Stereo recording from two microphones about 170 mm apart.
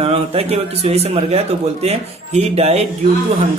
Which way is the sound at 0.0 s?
35° right (ahead or behind).